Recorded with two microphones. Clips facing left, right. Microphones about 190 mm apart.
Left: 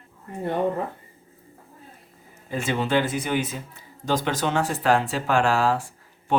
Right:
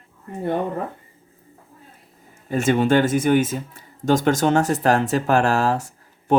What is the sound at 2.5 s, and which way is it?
Speech, 45° right (ahead or behind).